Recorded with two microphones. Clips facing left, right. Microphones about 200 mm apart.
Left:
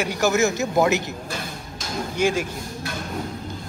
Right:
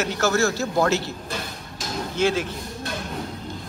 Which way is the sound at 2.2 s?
15° left (ahead or behind).